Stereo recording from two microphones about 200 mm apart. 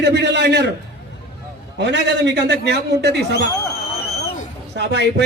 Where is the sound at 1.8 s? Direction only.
60° right (ahead or behind).